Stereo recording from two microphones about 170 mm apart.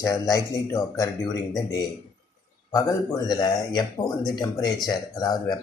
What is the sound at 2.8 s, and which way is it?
Speech, 20° left (ahead or behind).